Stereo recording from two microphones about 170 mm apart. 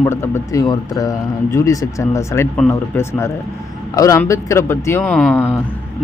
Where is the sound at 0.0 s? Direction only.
15° left (ahead or behind).